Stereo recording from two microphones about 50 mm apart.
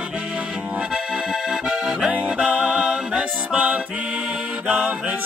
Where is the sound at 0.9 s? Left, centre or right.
Centre.